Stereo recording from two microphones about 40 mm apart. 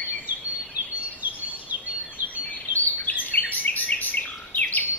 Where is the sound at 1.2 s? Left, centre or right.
Right.